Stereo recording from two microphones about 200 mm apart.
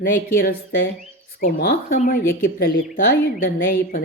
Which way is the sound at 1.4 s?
45° left (ahead or behind).